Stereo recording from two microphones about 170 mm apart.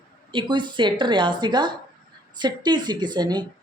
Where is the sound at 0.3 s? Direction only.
30° right (ahead or behind).